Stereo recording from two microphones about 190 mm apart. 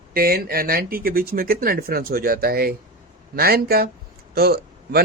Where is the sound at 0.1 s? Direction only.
55° right (ahead or behind).